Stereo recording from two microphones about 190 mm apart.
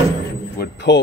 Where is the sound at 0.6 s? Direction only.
65° left (ahead or behind).